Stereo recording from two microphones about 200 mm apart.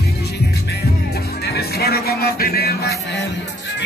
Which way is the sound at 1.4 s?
55° left (ahead or behind).